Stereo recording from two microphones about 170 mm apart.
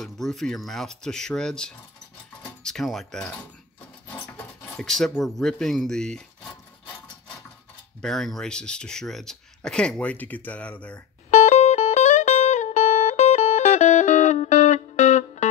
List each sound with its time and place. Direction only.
0.0 s speech: centre (ahead or behind)
8.0 s speech: centre (ahead or behind)
11.2 s music: 45° left (ahead or behind)